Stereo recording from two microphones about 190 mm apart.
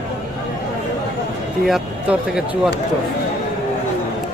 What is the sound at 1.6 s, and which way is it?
Speech, centre (ahead or behind).